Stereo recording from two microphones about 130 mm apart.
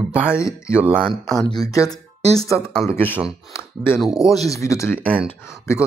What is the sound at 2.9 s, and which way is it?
Speech, 15° left (ahead or behind).